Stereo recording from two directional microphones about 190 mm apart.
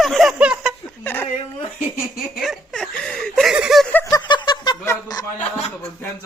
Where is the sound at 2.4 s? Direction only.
Centre (ahead or behind).